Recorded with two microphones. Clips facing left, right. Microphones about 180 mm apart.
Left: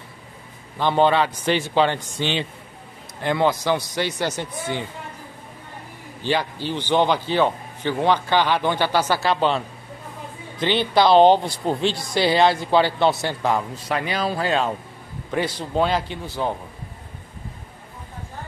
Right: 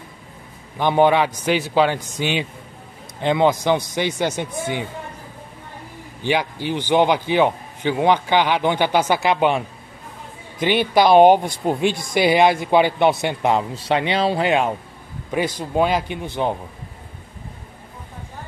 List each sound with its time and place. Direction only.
0.7 s a man's voice: 15° right (ahead or behind)
6.2 s a man's voice: 15° right (ahead or behind)
11.0 s a man's voice: 15° right (ahead or behind)